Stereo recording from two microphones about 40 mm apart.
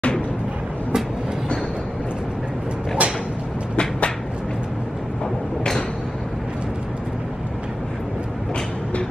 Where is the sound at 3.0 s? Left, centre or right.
Right.